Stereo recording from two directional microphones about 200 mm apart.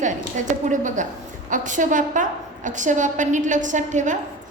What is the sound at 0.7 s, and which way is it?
A woman's voice, 40° right (ahead or behind).